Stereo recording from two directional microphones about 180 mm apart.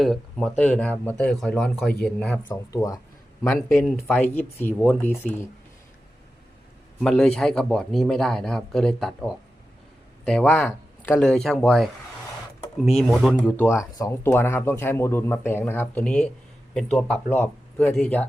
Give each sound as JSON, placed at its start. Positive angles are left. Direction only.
{"t": 0.0, "sound": "speech", "side_deg": 0}
{"t": 2.5, "sound": "speech", "side_deg": 20}
{"t": 7.0, "sound": "speech", "side_deg": 0}
{"t": 10.2, "sound": "speech", "side_deg": 5}
{"t": 13.4, "sound": "speech", "side_deg": 10}